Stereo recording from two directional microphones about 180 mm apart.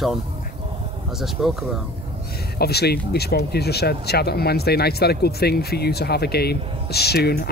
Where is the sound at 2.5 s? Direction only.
65° left (ahead or behind).